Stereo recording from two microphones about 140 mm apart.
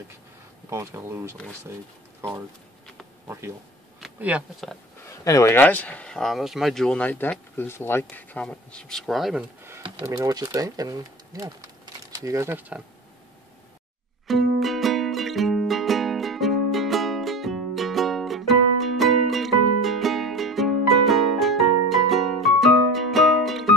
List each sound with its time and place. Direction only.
0.7 s speech: 20° right (ahead or behind)
3.3 s speech: 20° right (ahead or behind)
5.2 s speech: 20° left (ahead or behind); by 9.4 s centre (ahead or behind)
10.0 s speech: 25° right (ahead or behind)
14.2 s music: centre (ahead or behind)